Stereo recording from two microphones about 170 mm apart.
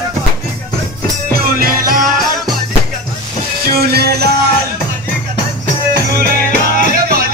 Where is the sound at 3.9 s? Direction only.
70° right (ahead or behind).